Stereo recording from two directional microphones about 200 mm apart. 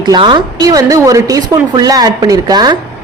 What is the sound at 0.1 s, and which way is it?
A woman's voice, 25° right (ahead or behind).